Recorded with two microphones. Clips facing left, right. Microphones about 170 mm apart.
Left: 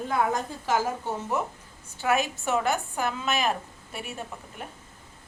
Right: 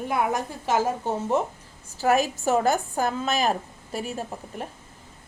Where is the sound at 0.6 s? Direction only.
20° right (ahead or behind).